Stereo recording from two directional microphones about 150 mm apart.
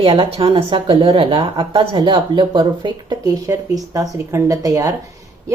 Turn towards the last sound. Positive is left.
turn(degrees=-20)  # may be behind; listen again after turning